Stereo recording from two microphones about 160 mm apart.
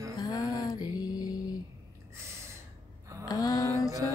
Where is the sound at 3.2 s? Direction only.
25° left (ahead or behind).